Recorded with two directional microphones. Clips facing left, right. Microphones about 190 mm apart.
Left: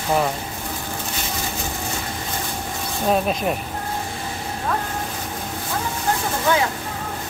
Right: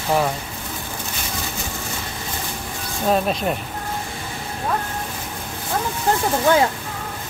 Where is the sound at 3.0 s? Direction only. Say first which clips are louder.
Right 1 dB; centre (ahead or behind).